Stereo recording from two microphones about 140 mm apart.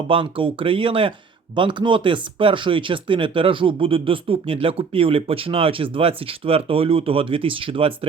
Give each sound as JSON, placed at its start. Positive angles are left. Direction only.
{"t": 0.1, "sound": "speech", "side_deg": -40}